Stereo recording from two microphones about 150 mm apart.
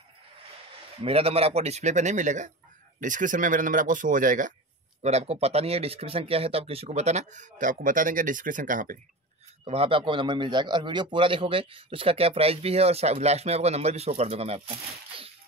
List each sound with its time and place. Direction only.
1.0 s speech: 40° right (ahead or behind); by 4.6 s 60° right (ahead or behind)
5.0 s speech: 45° right (ahead or behind); by 8.9 s 60° right (ahead or behind)
9.7 s a man's voice: 40° right (ahead or behind)